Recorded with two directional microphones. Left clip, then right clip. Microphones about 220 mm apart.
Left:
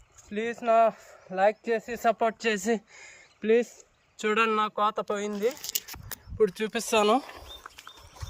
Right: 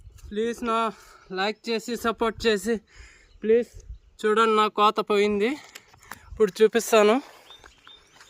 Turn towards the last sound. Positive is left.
turn(degrees=-10)  # may be behind; listen again after turning